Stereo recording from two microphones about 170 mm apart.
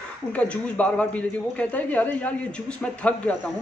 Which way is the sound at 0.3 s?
10° left (ahead or behind).